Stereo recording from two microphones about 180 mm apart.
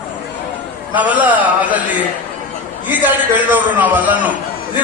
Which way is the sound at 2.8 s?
10° right (ahead or behind).